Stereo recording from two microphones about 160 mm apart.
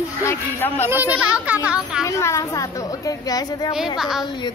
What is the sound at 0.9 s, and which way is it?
A woman's voice, 10° right (ahead or behind).